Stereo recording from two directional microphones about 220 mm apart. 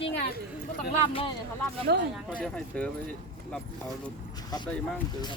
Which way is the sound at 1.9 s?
45° right (ahead or behind).